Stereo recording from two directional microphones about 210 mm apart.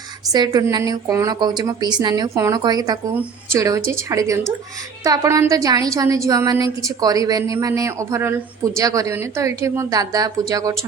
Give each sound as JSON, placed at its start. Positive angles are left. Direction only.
{"t": 0.3, "sound": "a woman's voice", "side_deg": -20}